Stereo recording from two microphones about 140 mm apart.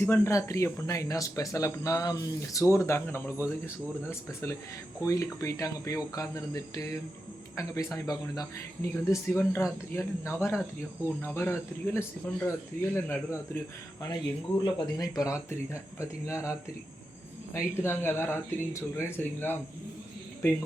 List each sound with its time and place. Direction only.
0.0 s speech: 20° left (ahead or behind)
14.6 s speech: 25° left (ahead or behind)